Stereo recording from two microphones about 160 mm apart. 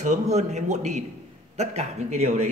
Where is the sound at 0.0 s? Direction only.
45° right (ahead or behind).